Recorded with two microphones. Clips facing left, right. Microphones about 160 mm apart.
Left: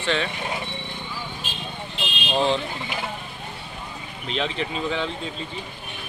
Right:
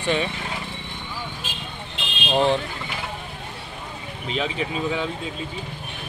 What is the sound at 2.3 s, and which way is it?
Speech, 15° right (ahead or behind).